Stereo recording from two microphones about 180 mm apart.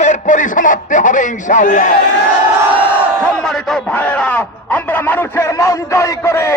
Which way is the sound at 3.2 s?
5° left (ahead or behind).